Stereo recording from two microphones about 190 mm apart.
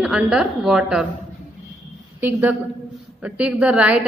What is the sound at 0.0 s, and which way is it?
A woman's voice, 5° right (ahead or behind).